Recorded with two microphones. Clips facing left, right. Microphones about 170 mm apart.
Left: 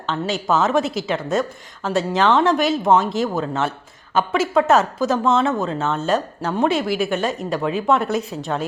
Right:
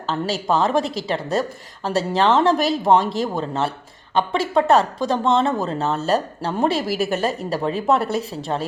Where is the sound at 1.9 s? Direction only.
35° right (ahead or behind).